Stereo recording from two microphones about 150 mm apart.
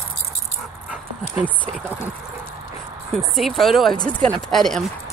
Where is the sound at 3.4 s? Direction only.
Centre (ahead or behind).